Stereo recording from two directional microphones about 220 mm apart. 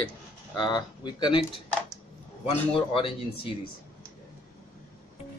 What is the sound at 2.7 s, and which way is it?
Speech, 25° left (ahead or behind).